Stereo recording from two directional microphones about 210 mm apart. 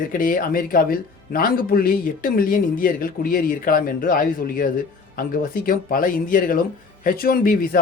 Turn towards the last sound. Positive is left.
turn(degrees=40)  # may be behind; listen again after turning